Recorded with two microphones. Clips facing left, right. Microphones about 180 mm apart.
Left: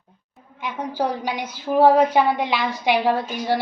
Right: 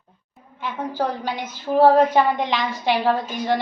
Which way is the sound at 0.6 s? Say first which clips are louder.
Even; 15° left (ahead or behind).